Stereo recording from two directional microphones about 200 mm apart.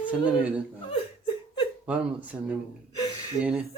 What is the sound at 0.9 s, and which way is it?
Laughter, 25° left (ahead or behind).